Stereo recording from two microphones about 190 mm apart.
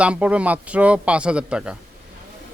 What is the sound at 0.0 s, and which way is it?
Speech, 5° right (ahead or behind).